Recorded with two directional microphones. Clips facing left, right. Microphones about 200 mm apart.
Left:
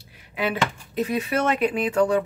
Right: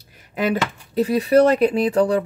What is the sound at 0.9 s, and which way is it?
Speech, 35° right (ahead or behind).